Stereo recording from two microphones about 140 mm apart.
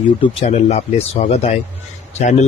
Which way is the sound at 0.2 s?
45° left (ahead or behind).